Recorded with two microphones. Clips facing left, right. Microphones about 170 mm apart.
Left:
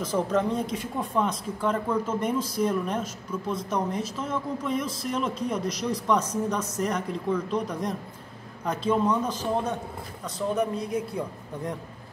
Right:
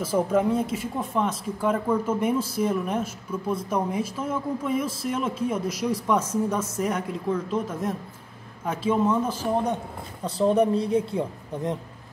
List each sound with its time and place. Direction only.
0.0 s speech: 10° right (ahead or behind)
10.2 s speech: 30° right (ahead or behind)